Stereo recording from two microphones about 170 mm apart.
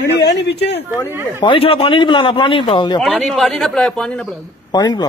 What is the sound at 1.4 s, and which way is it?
A man's voice, 30° left (ahead or behind).